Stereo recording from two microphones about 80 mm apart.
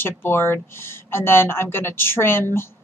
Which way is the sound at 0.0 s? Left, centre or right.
Left.